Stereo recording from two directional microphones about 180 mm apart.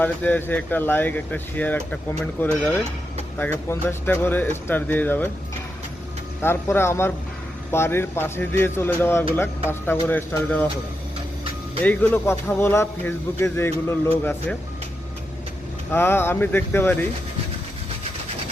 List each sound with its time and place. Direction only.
0.0 s speech: 10° left (ahead or behind)
6.4 s speech: 15° left (ahead or behind)
11.8 s speech: 10° left (ahead or behind)
15.9 s speech: 10° left (ahead or behind)